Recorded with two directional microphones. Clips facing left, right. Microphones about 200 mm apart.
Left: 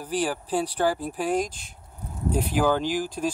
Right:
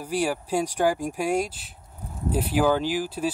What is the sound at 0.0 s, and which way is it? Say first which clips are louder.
Speech: right 1 dB; 10° right (ahead or behind).